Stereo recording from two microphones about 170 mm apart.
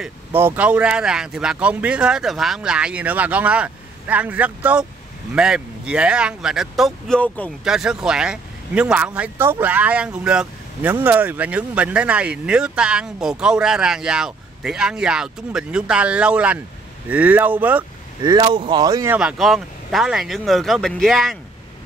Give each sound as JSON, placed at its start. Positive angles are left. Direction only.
{"t": 0.0, "sound": "speech", "side_deg": -10}
{"t": 7.6, "sound": "speech", "side_deg": -5}
{"t": 18.2, "sound": "speech", "side_deg": -25}
{"t": 19.1, "sound": "speech", "side_deg": -5}